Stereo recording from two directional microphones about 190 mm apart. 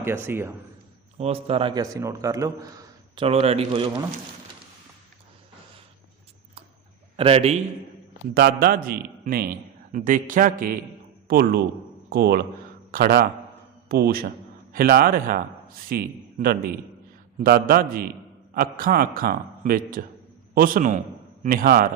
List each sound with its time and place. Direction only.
0.0 s a man's voice: 10° right (ahead or behind)
1.2 s a man's voice: 30° right (ahead or behind)
3.2 s speech: 30° right (ahead or behind)
7.2 s speech: 30° right (ahead or behind)
8.3 s a man's voice: 55° right (ahead or behind)